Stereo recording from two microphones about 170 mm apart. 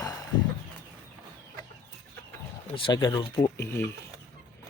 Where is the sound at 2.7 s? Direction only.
25° left (ahead or behind).